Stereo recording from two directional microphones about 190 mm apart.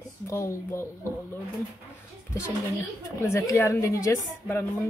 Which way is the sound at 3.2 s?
15° left (ahead or behind).